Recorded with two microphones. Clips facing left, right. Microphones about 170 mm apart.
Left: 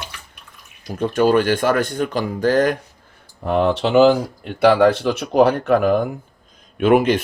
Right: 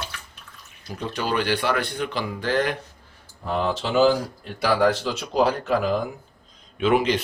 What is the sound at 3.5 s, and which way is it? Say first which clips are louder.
Speech: left 7 dB; 65° left (ahead or behind).